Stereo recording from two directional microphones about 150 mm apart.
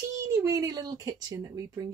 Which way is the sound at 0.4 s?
25° right (ahead or behind).